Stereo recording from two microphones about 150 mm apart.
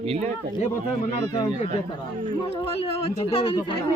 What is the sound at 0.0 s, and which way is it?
Speech, 40° right (ahead or behind).